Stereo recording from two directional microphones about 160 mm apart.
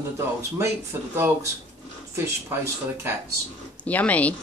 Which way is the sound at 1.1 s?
15° right (ahead or behind).